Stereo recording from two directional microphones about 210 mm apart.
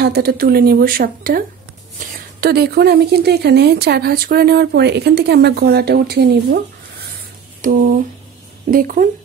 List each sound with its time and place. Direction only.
0.0 s speech: 50° right (ahead or behind)
7.6 s speech: 40° right (ahead or behind)